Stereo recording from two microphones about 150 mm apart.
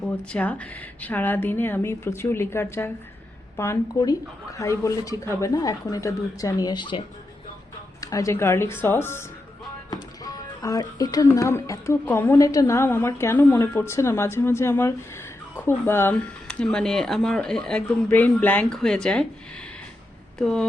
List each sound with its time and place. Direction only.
0.0 s a woman's voice: 10° left (ahead or behind); by 7.0 s 30° left (ahead or behind)
8.0 s a woman's voice: 20° left (ahead or behind); by 19.2 s 5° left (ahead or behind)
20.4 s speech: 5° left (ahead or behind)